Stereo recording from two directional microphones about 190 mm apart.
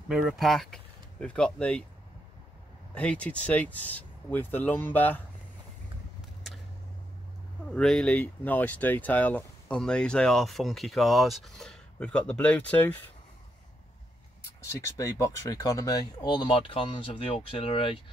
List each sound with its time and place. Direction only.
0.1 s speech: centre (ahead or behind)
2.9 s speech: 5° left (ahead or behind)
7.7 s speech: 5° left (ahead or behind)
14.8 s speech: 15° left (ahead or behind)